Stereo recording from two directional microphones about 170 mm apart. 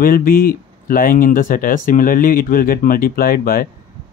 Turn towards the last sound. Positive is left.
turn(degrees=60)  # may be behind; listen again after turning